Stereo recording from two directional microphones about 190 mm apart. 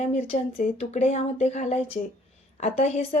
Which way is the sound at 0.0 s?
35° left (ahead or behind).